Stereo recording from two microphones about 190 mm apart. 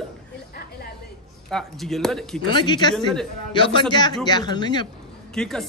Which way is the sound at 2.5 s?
25° left (ahead or behind).